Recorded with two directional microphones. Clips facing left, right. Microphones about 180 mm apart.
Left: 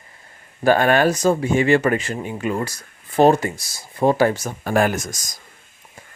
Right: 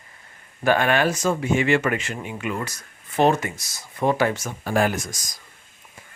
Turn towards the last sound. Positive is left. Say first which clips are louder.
# left 3 dB
turn(degrees=45)  # may be behind; listen again after turning